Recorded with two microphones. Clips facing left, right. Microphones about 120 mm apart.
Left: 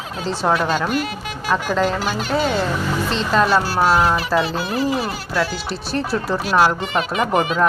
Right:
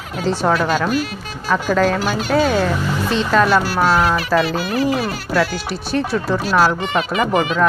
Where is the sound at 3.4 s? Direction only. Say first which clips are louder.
Right 1 dB; 15° left (ahead or behind).